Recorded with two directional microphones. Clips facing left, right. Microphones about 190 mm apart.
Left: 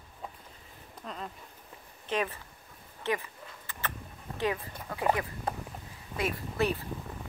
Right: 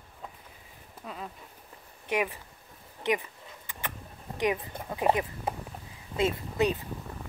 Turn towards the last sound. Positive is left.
turn(degrees=-20)  # may be behind; listen again after turning